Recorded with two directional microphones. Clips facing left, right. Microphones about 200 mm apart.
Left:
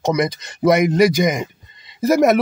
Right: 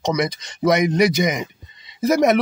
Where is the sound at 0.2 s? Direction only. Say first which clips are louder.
Left 2 dB; centre (ahead or behind).